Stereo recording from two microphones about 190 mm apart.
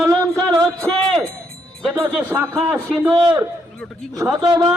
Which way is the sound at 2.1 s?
5° right (ahead or behind).